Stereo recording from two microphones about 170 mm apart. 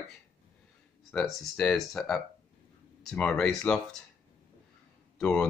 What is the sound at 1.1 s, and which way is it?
Speech, 5° left (ahead or behind).